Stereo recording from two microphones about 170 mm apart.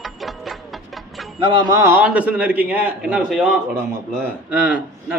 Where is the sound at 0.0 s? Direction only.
Centre (ahead or behind).